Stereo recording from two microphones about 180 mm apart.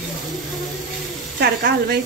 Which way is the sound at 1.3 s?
60° right (ahead or behind).